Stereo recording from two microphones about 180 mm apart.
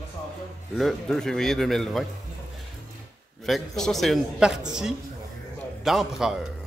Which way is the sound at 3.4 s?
Centre (ahead or behind).